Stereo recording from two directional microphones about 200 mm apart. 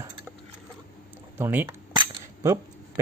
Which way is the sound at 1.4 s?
10° right (ahead or behind).